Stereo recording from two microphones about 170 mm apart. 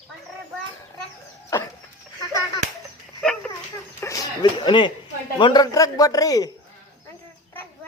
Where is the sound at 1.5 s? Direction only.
15° left (ahead or behind).